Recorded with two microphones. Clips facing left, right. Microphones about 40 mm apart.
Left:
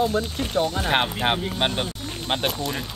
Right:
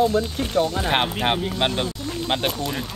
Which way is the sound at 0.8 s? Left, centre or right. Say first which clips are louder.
Right 1 dB; centre.